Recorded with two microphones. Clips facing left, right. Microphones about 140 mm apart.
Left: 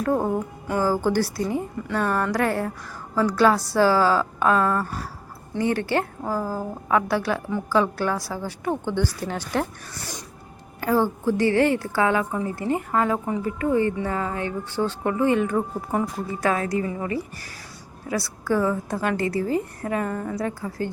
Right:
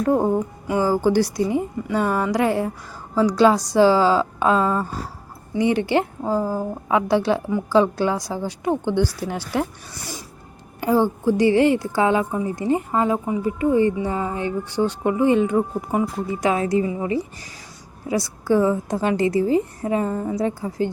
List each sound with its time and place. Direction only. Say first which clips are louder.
0.1 s a woman's voice: right 4 dB; 15° right (ahead or behind)